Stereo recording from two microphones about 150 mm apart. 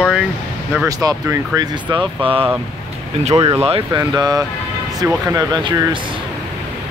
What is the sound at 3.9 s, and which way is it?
Speech, 25° right (ahead or behind).